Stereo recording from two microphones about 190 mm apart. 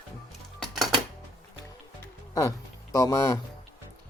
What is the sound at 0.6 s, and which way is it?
Music, centre (ahead or behind).